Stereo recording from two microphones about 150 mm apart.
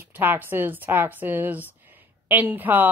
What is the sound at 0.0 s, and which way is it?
Speech, 15° right (ahead or behind).